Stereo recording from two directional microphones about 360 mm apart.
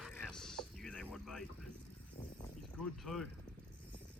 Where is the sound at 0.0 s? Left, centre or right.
Centre.